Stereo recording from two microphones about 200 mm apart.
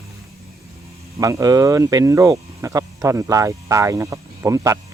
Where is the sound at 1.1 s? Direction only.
15° right (ahead or behind).